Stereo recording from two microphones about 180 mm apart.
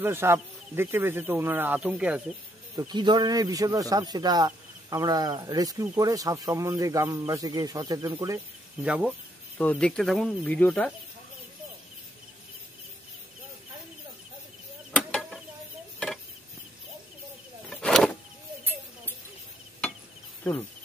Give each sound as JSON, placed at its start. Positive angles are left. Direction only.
{"t": 0.0, "sound": "speech", "side_deg": -15}
{"t": 2.9, "sound": "speech", "side_deg": -25}
{"t": 8.8, "sound": "speech", "side_deg": -5}
{"t": 9.6, "sound": "speech", "side_deg": 5}
{"t": 14.9, "sound": "a sound", "side_deg": 10}
{"t": 17.6, "sound": "vehicle", "side_deg": 5}